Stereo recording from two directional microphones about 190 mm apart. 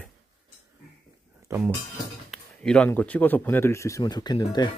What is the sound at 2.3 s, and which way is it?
A man's voice, 5° left (ahead or behind).